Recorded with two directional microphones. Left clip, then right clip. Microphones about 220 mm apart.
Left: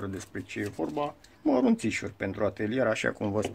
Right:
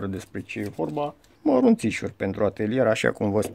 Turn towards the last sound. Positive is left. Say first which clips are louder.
# right 6 dB
turn(degrees=-40)  # may be behind; listen again after turning